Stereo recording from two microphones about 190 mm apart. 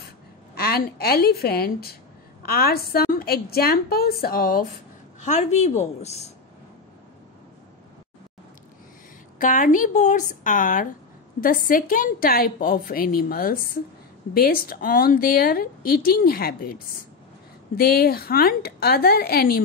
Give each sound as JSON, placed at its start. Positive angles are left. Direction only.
{"t": 0.6, "sound": "a woman's voice", "side_deg": 55}
{"t": 5.2, "sound": "a woman's voice", "side_deg": 35}
{"t": 9.4, "sound": "a woman's voice", "side_deg": 45}